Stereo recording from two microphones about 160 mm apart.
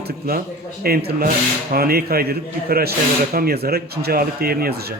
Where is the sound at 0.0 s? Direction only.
70° right (ahead or behind).